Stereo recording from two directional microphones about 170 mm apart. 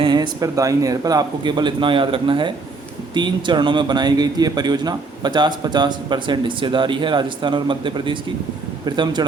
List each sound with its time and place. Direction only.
0.0 s a man's voice: 25° right (ahead or behind)